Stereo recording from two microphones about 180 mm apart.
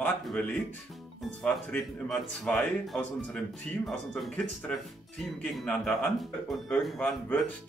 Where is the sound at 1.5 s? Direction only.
5° left (ahead or behind).